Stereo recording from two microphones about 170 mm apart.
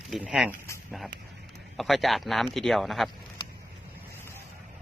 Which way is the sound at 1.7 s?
Centre (ahead or behind).